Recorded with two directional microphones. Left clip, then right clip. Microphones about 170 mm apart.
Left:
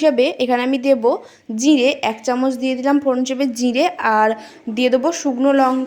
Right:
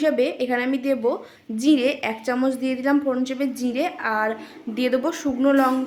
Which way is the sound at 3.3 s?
40° left (ahead or behind).